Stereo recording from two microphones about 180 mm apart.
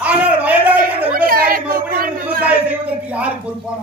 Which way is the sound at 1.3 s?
55° right (ahead or behind).